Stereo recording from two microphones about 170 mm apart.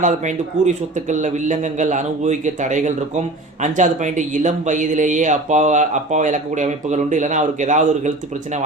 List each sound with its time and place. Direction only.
0.0 s a man's voice: 45° right (ahead or behind)